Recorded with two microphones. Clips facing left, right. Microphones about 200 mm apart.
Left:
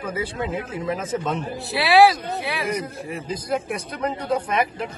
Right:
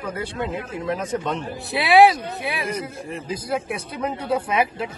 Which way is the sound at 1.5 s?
20° right (ahead or behind).